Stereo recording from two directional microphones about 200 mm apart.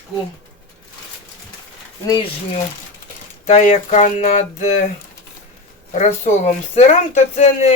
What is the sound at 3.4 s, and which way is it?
Speech, 35° left (ahead or behind).